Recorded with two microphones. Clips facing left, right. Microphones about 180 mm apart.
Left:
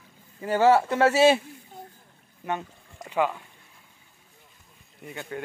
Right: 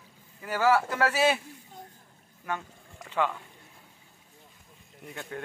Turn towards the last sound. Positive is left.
turn(degrees=0)  # may be behind; listen again after turning